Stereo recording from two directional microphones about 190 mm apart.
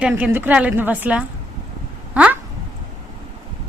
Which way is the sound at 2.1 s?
5° right (ahead or behind).